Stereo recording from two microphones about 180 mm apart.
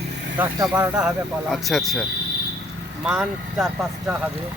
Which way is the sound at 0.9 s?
5° right (ahead or behind).